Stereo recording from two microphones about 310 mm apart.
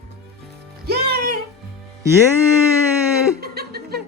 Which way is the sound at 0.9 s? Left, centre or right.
Right.